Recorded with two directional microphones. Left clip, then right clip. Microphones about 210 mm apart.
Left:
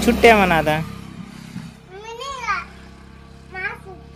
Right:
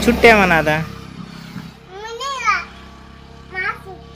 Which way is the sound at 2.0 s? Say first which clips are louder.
Right 4 dB; 10° left (ahead or behind).